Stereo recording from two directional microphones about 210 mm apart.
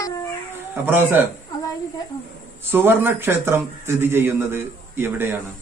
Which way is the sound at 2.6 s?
10° right (ahead or behind).